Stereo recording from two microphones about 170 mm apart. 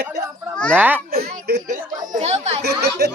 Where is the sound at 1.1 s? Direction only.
65° right (ahead or behind).